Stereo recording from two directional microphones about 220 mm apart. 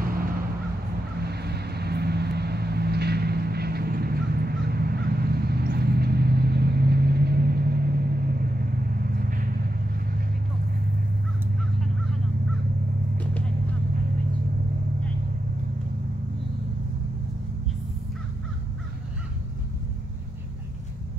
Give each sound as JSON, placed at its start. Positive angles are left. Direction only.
{"t": 0.0, "sound": "crow", "side_deg": -40}
{"t": 1.2, "sound": "vehicle", "side_deg": -45}
{"t": 9.1, "sound": "vehicle", "side_deg": -40}